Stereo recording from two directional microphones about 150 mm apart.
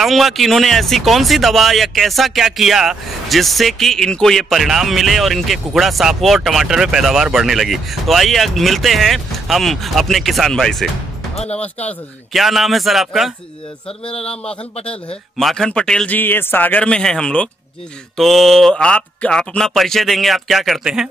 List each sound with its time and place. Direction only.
0.0 s speech: centre (ahead or behind)
11.3 s speech: 45° left (ahead or behind)
12.3 s a man's voice: centre (ahead or behind)